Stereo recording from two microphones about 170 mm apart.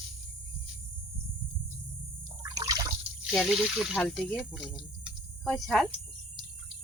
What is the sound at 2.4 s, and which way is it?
Water, 20° right (ahead or behind).